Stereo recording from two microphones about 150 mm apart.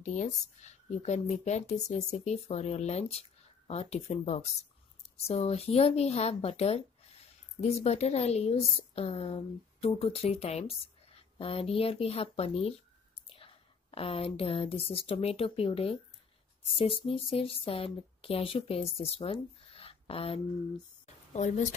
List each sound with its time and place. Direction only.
0.0 s a woman's voice: 55° left (ahead or behind); by 20.8 s 40° left (ahead or behind)
21.3 s speech: 50° left (ahead or behind)